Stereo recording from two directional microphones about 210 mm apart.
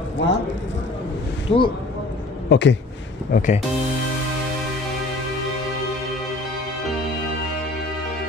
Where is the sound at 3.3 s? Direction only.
40° left (ahead or behind).